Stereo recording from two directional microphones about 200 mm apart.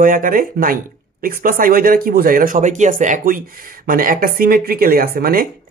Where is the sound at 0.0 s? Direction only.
45° right (ahead or behind).